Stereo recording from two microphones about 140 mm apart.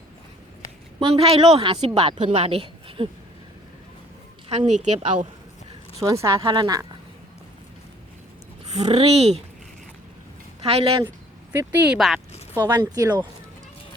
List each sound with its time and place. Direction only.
0.9 s a woman's voice: 40° right (ahead or behind)
4.4 s a woman's voice: 50° right (ahead or behind)
6.0 s speech: 20° right (ahead or behind)
8.7 s a woman's voice: 50° right (ahead or behind)
10.6 s speech: 45° right (ahead or behind)
11.5 s speech: 10° right (ahead or behind)
11.9 s speech: centre (ahead or behind)
12.5 s speech: 30° right (ahead or behind)